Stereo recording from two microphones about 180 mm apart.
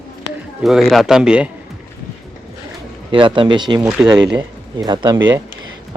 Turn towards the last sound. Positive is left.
turn(degrees=-25)  # may be behind; listen again after turning